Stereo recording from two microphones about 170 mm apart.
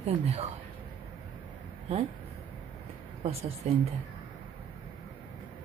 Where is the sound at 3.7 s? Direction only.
40° right (ahead or behind).